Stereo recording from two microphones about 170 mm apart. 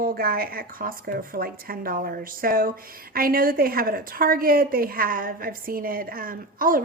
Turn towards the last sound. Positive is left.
turn(degrees=-55)  # may be behind; listen again after turning